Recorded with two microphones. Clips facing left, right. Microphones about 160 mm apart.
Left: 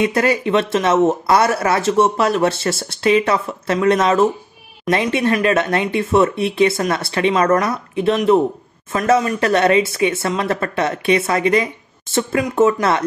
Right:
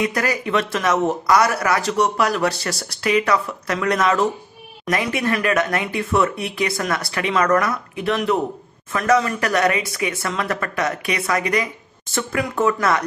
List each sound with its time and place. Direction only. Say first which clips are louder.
0.0 s speech: left 5 dB; 25° left (ahead or behind)